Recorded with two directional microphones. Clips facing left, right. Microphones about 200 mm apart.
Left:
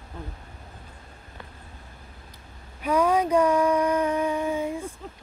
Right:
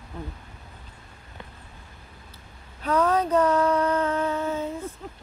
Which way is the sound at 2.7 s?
10° left (ahead or behind).